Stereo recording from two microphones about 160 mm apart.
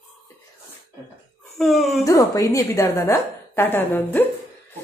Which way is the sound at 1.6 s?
Centre (ahead or behind).